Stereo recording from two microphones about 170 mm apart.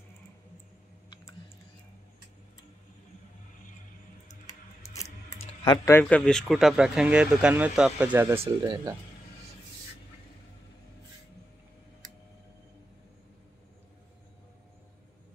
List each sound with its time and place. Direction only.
4.3 s a sound: 20° left (ahead or behind)
5.4 s typing: 25° left (ahead or behind)
5.9 s speech: 10° left (ahead or behind); by 8.4 s 10° right (ahead or behind)
8.4 s speech: 25° right (ahead or behind)